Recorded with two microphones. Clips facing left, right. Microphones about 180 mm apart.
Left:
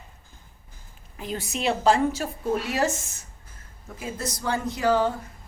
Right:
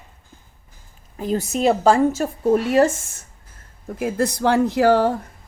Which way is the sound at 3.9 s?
65° right (ahead or behind).